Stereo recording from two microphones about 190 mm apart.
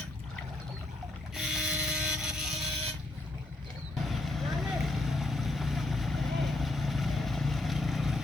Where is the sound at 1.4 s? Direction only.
Centre (ahead or behind).